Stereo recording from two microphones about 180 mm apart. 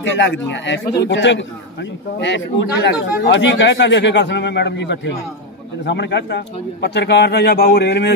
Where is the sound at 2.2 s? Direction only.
75° left (ahead or behind).